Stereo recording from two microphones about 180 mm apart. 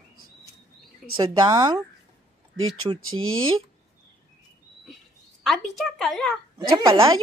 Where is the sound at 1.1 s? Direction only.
20° right (ahead or behind).